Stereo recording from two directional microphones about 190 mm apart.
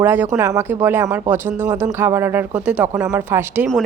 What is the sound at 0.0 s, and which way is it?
A woman's voice, 10° right (ahead or behind).